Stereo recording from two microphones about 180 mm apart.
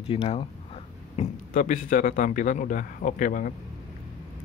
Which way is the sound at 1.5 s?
45° left (ahead or behind).